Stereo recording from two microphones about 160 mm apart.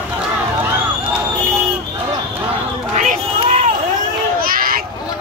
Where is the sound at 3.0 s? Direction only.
50° right (ahead or behind).